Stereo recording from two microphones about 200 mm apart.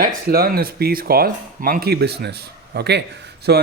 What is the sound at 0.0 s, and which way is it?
Speech, 50° right (ahead or behind).